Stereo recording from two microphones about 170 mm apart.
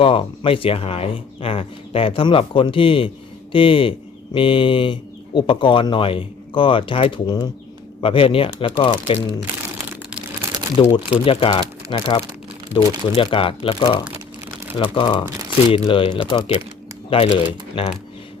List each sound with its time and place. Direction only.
0.0 s speech: 30° left (ahead or behind)
10.8 s speech: 30° left (ahead or behind)